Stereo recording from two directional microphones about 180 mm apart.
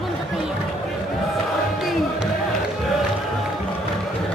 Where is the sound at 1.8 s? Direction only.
Centre (ahead or behind).